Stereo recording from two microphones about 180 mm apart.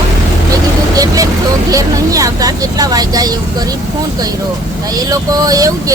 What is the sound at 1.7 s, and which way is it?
Speech, 20° right (ahead or behind).